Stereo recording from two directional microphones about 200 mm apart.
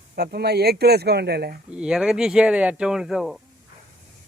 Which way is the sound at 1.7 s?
5° right (ahead or behind).